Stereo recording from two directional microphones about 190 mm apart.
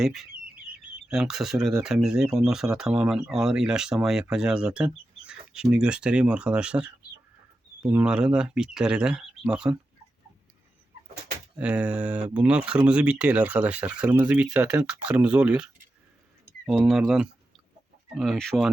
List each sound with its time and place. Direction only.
0.0 s speech: centre (ahead or behind)
11.5 s speech: 5° right (ahead or behind)